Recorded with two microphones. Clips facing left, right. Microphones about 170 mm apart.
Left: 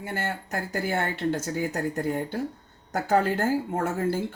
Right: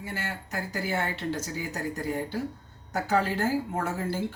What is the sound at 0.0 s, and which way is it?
A woman's voice, 55° left (ahead or behind).